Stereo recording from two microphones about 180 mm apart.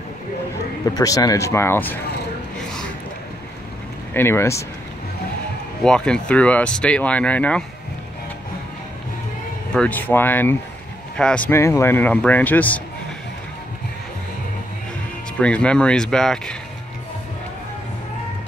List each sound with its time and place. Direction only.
0.9 s speech: 20° left (ahead or behind)
4.1 s speech: 15° left (ahead or behind)
5.9 s speech: 5° left (ahead or behind)
9.8 s speech: 10° left (ahead or behind)
15.3 s speech: 5° left (ahead or behind)